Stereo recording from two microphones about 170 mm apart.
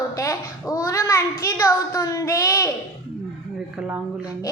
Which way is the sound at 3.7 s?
5° right (ahead or behind).